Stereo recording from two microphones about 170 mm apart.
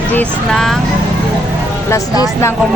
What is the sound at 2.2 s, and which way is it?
Speech, 15° left (ahead or behind).